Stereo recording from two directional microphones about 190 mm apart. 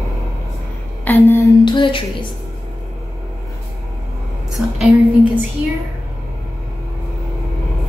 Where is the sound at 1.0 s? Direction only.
10° left (ahead or behind).